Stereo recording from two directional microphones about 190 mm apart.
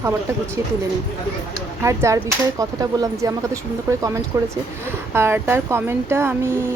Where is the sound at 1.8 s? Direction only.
15° right (ahead or behind).